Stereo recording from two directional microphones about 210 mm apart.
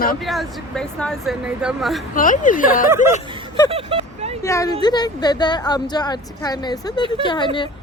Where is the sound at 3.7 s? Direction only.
25° right (ahead or behind).